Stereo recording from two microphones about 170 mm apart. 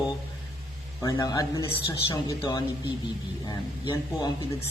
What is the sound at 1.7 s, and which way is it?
Speech, 35° left (ahead or behind).